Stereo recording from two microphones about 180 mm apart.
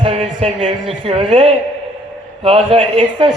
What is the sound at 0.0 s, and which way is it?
A man's voice, 30° right (ahead or behind).